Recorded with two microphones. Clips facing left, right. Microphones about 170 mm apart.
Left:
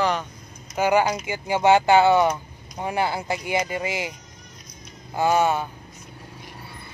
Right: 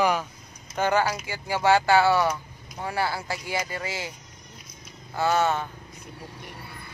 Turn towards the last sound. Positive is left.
turn(degrees=10)  # may be behind; listen again after turning